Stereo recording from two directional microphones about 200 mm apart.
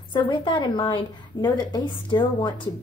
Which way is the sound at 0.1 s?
25° left (ahead or behind).